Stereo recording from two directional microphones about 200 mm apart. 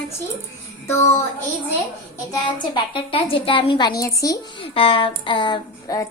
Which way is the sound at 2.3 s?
25° left (ahead or behind).